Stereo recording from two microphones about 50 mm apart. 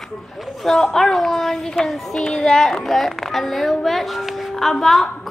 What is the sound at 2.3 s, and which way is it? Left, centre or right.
A woman's voice, centre.